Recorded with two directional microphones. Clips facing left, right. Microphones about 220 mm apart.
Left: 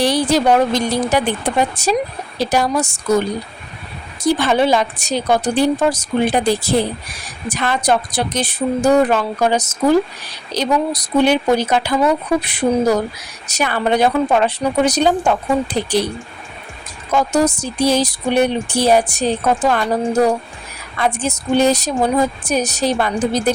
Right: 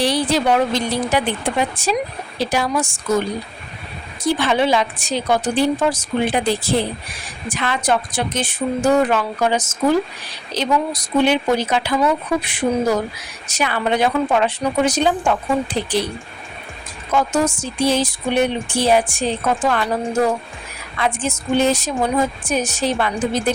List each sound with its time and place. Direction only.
0.0 s a woman's voice: 45° left (ahead or behind)
4.2 s a woman's voice: 45° left (ahead or behind)
17.2 s speech: 40° left (ahead or behind)
21.0 s speech: 40° left (ahead or behind)